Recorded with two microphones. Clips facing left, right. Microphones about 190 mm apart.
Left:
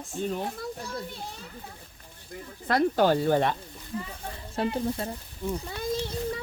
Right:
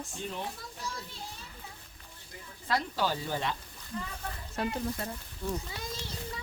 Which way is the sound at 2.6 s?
55° left (ahead or behind).